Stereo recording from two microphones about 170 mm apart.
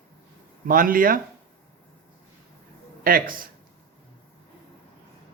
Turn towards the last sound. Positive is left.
turn(degrees=-55)  # may be behind; listen again after turning